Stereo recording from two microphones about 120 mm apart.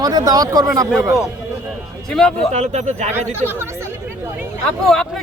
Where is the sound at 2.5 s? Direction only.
75° right (ahead or behind).